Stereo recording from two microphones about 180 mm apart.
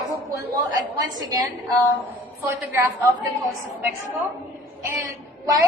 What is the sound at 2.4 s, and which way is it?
Speech, 15° right (ahead or behind).